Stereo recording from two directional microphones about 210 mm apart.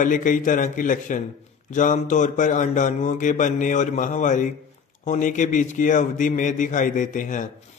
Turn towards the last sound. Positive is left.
turn(degrees=40)  # may be behind; listen again after turning